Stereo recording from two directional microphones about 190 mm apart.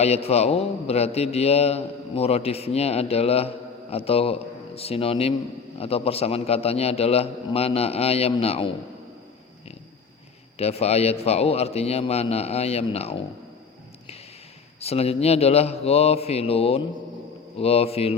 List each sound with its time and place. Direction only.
0.0 s a man's voice: 35° left (ahead or behind)
10.6 s a man's voice: 35° left (ahead or behind)
14.8 s a man's voice: 35° left (ahead or behind)